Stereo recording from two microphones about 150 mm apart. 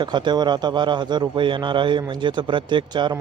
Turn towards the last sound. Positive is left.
turn(degrees=-30)  # may be behind; listen again after turning